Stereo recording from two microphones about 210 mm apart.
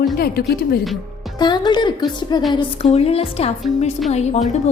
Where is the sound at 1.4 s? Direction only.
20° left (ahead or behind).